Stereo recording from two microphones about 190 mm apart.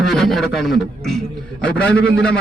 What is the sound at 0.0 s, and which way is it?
A man's voice, centre (ahead or behind).